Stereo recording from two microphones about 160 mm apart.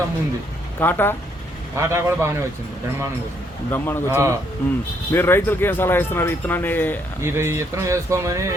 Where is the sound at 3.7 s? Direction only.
15° left (ahead or behind).